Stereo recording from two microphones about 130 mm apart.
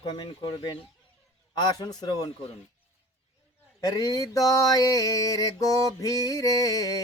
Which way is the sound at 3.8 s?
30° left (ahead or behind).